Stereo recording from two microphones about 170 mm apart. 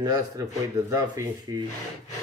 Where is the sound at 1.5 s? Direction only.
20° right (ahead or behind).